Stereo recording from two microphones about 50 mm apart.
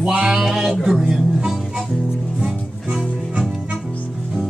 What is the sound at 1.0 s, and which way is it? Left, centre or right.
Music, centre.